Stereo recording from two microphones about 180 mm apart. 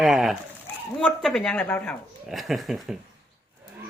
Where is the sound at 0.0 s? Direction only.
Centre (ahead or behind).